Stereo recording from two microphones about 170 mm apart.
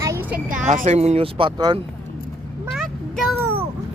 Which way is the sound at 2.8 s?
Centre (ahead or behind).